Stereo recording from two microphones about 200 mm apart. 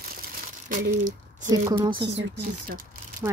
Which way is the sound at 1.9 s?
60° right (ahead or behind).